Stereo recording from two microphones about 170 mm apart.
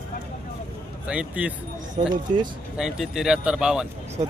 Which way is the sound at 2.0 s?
40° right (ahead or behind).